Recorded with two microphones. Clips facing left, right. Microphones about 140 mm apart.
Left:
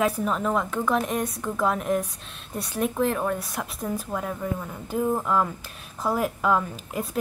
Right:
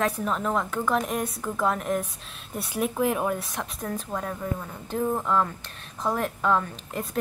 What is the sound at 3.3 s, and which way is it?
A woman's voice, centre (ahead or behind).